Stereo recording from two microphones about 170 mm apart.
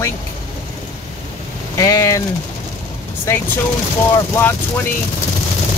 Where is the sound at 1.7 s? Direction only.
20° left (ahead or behind).